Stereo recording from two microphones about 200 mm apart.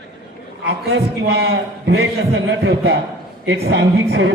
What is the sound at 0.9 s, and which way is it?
A man's voice, 55° right (ahead or behind).